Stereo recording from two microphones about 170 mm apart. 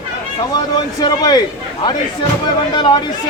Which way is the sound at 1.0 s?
25° left (ahead or behind).